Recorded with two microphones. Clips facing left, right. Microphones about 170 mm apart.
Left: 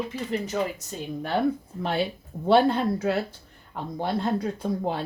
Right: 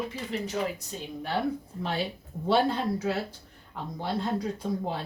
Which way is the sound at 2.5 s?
60° left (ahead or behind).